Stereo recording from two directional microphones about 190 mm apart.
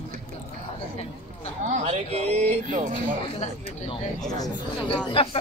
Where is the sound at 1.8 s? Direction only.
35° right (ahead or behind).